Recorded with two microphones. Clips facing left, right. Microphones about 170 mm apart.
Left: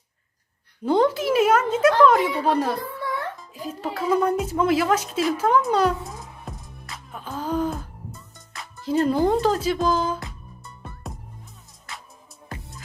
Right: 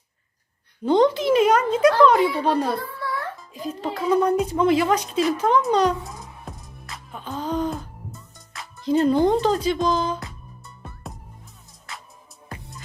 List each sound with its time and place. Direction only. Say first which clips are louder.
0.9 s a woman's voice: right 2 dB; 5° left (ahead or behind)
11.9 s music: even; centre (ahead or behind)